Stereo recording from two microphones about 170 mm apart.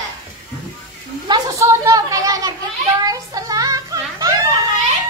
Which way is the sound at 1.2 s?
20° right (ahead or behind).